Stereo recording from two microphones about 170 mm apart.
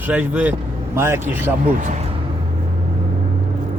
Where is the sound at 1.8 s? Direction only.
40° right (ahead or behind).